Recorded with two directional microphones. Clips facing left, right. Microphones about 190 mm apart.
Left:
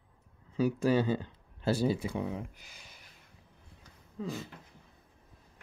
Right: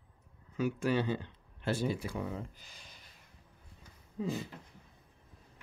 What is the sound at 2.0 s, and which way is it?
Speech, 20° left (ahead or behind).